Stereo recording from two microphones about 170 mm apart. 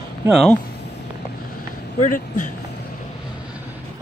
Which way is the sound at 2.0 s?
50° left (ahead or behind).